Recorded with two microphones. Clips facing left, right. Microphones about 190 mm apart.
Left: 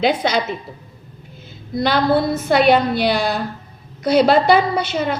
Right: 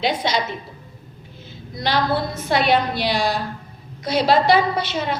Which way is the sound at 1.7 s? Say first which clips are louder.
Left 5 dB; 55° left (ahead or behind).